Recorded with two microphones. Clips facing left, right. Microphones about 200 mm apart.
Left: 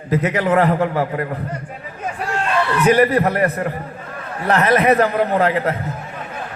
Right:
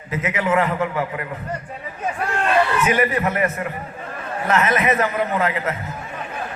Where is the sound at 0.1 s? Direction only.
35° left (ahead or behind).